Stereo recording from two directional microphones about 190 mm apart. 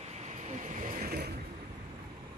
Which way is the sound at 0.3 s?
40° right (ahead or behind).